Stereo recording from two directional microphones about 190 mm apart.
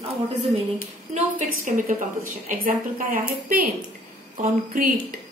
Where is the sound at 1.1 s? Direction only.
45° right (ahead or behind).